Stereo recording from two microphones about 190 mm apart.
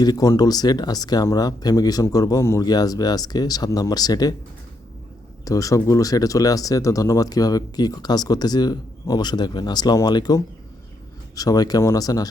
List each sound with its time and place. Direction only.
0.0 s speech: 20° left (ahead or behind)
5.5 s speech: 15° left (ahead or behind)